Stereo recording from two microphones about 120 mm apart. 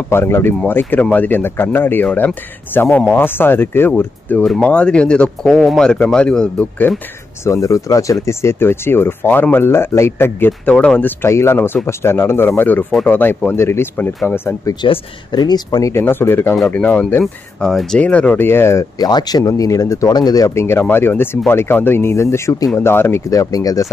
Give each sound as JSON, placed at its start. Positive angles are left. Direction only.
{"t": 0.1, "sound": "speech", "side_deg": 20}
{"t": 7.4, "sound": "speech", "side_deg": 25}
{"t": 14.8, "sound": "speech", "side_deg": 35}
{"t": 15.9, "sound": "speech", "side_deg": 20}
{"t": 18.9, "sound": "speech", "side_deg": 35}